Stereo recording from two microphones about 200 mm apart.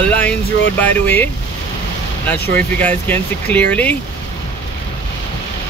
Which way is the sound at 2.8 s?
5° left (ahead or behind).